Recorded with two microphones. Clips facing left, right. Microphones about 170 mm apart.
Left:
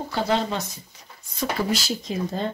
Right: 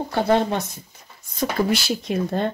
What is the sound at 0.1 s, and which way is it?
Speech, 60° right (ahead or behind).